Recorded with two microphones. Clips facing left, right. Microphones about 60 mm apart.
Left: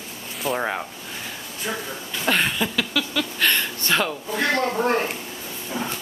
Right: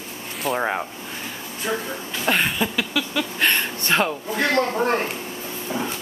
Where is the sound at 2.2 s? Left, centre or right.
Centre.